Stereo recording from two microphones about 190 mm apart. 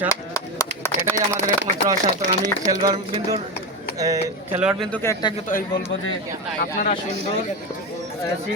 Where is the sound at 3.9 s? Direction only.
15° right (ahead or behind).